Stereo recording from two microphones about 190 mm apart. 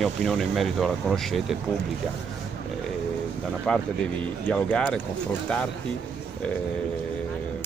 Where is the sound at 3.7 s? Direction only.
5° left (ahead or behind).